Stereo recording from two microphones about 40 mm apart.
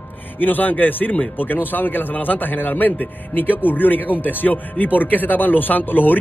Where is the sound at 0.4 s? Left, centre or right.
Left.